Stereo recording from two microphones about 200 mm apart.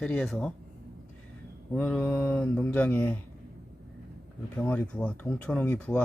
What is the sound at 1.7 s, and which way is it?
Speech, 5° left (ahead or behind).